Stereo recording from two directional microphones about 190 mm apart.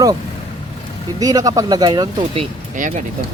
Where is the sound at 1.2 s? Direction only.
20° right (ahead or behind).